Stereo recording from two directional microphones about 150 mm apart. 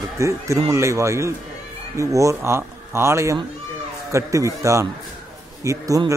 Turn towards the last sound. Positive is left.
turn(degrees=-20)  # may be behind; listen again after turning